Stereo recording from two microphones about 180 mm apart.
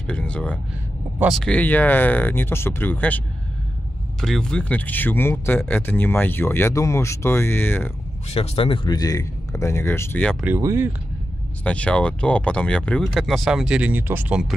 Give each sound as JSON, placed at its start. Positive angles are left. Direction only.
{"t": 0.0, "sound": "speech", "side_deg": 5}
{"t": 4.2, "sound": "speech", "side_deg": 5}
{"t": 8.3, "sound": "speech", "side_deg": 35}
{"t": 10.4, "sound": "speech", "side_deg": -15}
{"t": 11.6, "sound": "speech", "side_deg": 5}